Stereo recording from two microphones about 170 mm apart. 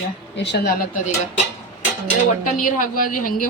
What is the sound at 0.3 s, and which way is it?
Speech, 85° left.